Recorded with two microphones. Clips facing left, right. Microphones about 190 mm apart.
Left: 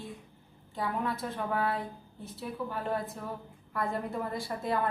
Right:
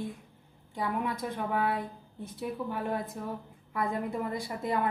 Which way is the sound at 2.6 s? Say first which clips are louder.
Left 1 dB; 20° right (ahead or behind).